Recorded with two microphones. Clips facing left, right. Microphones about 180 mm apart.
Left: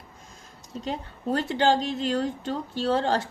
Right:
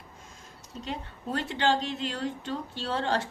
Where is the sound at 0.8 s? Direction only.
40° left (ahead or behind).